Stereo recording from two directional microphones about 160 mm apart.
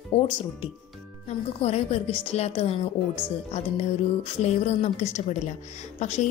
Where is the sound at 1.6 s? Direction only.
40° left (ahead or behind).